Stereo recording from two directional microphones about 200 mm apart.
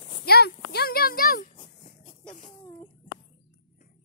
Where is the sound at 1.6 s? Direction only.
25° left (ahead or behind).